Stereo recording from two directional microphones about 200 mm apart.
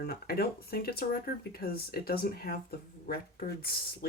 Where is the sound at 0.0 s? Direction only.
50° left (ahead or behind).